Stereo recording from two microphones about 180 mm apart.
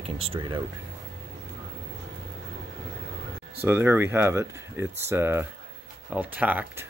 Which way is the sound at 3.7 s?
10° right (ahead or behind).